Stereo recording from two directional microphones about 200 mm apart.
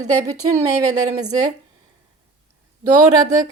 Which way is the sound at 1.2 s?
20° right (ahead or behind).